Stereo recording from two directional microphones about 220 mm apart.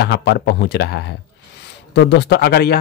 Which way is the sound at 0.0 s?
50° left (ahead or behind).